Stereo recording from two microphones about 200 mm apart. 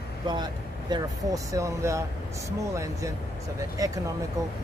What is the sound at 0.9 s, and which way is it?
Speech, 15° right (ahead or behind).